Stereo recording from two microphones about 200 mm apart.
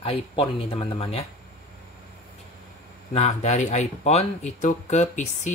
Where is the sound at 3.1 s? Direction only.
35° left (ahead or behind).